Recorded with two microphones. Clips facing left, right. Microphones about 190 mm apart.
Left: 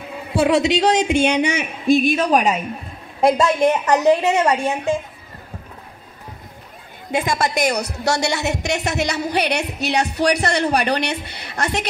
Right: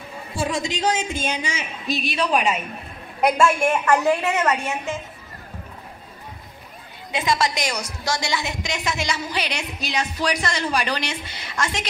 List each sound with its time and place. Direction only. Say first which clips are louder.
0.3 s a woman's voice: left 9 dB; 65° left (ahead or behind); by 2.6 s 40° left (ahead or behind)
3.2 s a woman's voice: left 3 dB; 20° left (ahead or behind)
7.1 s a woman's voice: left 2 dB; 50° left (ahead or behind)